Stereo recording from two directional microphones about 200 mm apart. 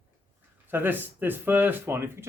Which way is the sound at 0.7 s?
10° right (ahead or behind).